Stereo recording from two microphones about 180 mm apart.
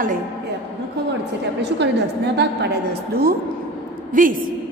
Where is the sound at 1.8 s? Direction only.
70° right (ahead or behind).